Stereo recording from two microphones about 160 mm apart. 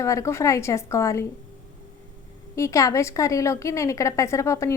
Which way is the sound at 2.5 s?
20° left (ahead or behind).